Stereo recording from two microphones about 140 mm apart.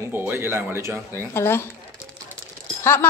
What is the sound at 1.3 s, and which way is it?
Speech, 20° left (ahead or behind).